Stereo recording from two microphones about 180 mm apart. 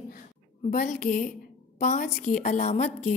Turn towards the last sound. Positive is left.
turn(degrees=40)  # may be behind; listen again after turning